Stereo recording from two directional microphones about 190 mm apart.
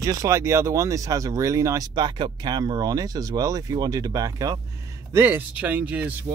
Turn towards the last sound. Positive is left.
turn(degrees=-5)  # may be behind; listen again after turning